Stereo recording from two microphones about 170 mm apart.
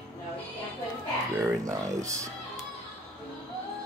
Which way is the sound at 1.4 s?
20° right (ahead or behind).